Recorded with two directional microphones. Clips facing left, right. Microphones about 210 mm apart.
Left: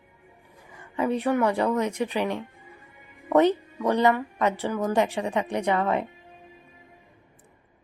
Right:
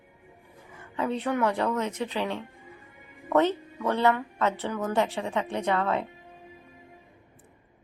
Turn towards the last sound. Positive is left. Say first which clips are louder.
# left 2 dB
turn(degrees=15)  # may be behind; listen again after turning